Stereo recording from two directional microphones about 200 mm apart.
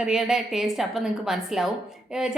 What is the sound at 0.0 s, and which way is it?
A woman's voice, 5° right (ahead or behind).